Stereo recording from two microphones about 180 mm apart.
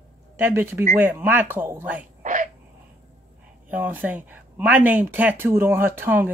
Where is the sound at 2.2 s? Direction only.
45° right (ahead or behind).